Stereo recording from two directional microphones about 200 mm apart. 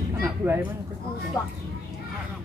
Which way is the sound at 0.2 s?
5° right (ahead or behind).